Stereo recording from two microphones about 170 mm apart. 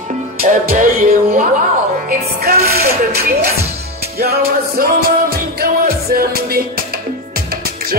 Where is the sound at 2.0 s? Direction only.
65° right (ahead or behind).